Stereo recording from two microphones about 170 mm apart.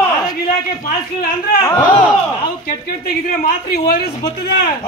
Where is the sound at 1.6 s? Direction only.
20° left (ahead or behind).